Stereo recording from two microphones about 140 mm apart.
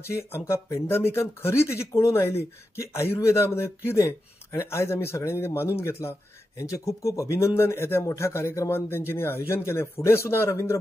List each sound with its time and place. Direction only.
0.0 s speech: 20° left (ahead or behind)